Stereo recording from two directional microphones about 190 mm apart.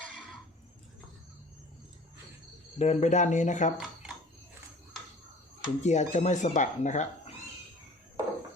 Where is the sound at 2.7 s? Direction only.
35° left (ahead or behind).